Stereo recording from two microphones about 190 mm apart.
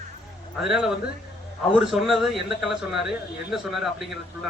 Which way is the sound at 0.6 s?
5° right (ahead or behind).